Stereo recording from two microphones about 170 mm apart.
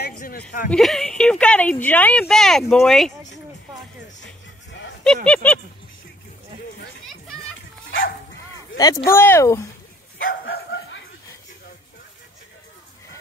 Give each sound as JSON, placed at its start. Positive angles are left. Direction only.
{"t": 0.7, "sound": "speech", "side_deg": 0}
{"t": 5.0, "sound": "speech", "side_deg": 5}
{"t": 8.7, "sound": "speech", "side_deg": 25}
{"t": 10.1, "sound": "bow-wow", "side_deg": 75}